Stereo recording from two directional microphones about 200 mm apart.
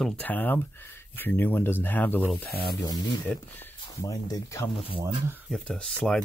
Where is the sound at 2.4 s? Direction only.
50° left (ahead or behind).